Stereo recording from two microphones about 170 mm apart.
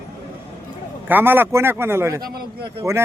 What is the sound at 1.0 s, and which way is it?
A man's voice, 10° right (ahead or behind).